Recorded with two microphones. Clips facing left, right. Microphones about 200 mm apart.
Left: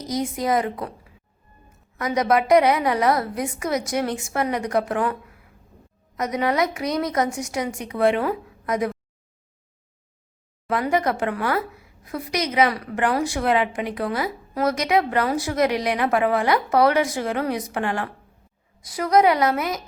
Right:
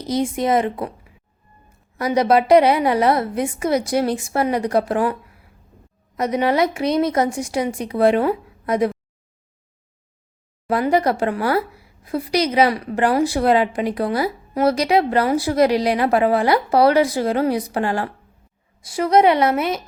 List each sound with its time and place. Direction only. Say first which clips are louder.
0.0 s a woman's voice: right 4 dB; 30° right (ahead or behind)
2.0 s a woman's voice: right 4 dB; 30° right (ahead or behind)
6.1 s a woman's voice: right 4 dB; 30° right (ahead or behind)
10.7 s a woman's voice: right 4 dB; 35° right (ahead or behind)